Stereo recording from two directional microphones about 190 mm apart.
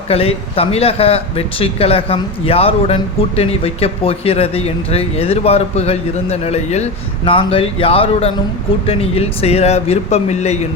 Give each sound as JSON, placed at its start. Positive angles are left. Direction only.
{"t": 0.1, "sound": "speech", "side_deg": 30}